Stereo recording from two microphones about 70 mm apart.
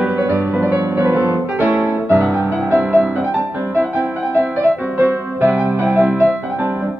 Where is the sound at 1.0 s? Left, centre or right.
Right.